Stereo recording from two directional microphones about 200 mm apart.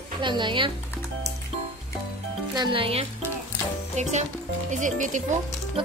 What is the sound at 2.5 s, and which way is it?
Speech, 25° right (ahead or behind).